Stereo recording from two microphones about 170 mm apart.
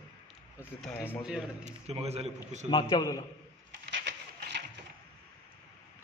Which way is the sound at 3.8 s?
90° right.